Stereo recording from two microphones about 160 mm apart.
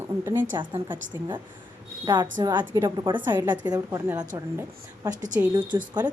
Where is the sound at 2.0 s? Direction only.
25° right (ahead or behind).